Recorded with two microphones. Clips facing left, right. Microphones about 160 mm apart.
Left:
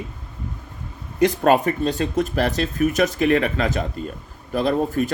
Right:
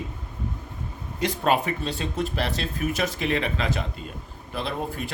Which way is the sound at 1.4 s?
45° left (ahead or behind).